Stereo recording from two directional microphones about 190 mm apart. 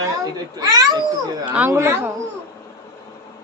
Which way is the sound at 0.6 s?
20° right (ahead or behind).